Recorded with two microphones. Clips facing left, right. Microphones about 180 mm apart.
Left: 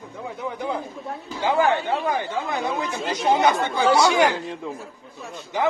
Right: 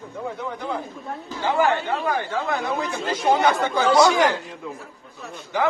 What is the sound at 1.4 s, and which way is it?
Speech, 15° left (ahead or behind).